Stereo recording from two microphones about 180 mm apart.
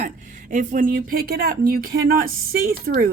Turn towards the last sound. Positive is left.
turn(degrees=-55)  # may be behind; listen again after turning